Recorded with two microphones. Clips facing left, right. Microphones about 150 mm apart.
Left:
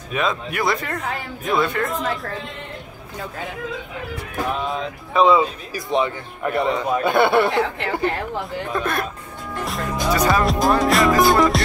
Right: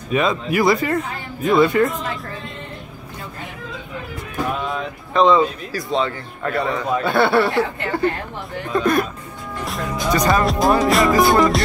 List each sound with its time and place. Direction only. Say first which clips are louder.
0.1 s speech: right 5 dB; centre (ahead or behind)
4.6 s speech: even; 5° left (ahead or behind)
8.7 s speech: right 7 dB; centre (ahead or behind)
9.7 s music: right 1 dB; centre (ahead or behind)